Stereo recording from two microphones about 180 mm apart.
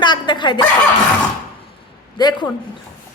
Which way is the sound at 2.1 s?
25° left (ahead or behind).